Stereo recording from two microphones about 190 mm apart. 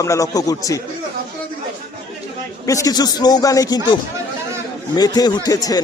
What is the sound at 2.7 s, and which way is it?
A man's voice, 20° left (ahead or behind).